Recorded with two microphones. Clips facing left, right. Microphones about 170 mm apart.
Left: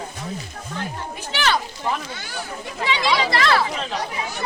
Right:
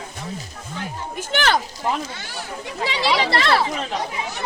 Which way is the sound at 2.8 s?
35° right (ahead or behind).